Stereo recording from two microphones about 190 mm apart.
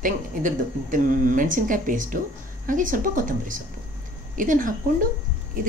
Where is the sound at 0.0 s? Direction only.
45° right (ahead or behind).